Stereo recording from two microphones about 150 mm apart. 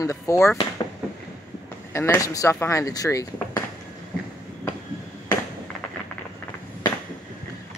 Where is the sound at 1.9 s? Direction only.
20° left (ahead or behind).